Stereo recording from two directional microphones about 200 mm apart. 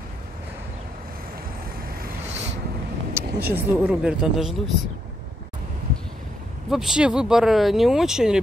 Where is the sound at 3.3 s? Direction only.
50° right (ahead or behind).